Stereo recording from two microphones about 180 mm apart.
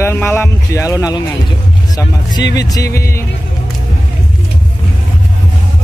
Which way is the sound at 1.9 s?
25° left (ahead or behind).